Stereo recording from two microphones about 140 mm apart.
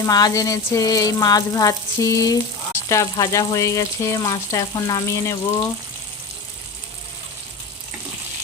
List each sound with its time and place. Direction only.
0.0 s speech: 25° left (ahead or behind)